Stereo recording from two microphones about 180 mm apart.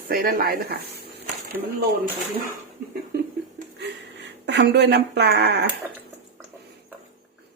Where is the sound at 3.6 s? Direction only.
45° right (ahead or behind).